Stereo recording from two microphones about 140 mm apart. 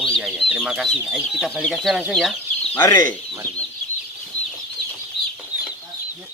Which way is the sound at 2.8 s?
25° left (ahead or behind).